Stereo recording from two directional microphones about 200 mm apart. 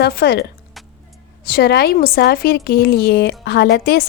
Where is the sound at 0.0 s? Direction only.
55° left (ahead or behind).